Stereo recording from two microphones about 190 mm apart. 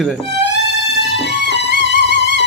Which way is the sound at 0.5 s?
65° left (ahead or behind).